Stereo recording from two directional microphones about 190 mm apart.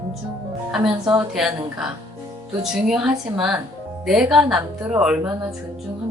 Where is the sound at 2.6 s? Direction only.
Centre (ahead or behind).